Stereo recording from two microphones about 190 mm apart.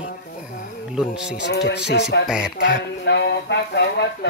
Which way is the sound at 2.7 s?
65° left (ahead or behind).